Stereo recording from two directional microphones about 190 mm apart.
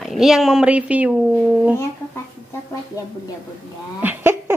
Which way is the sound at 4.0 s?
10° right (ahead or behind).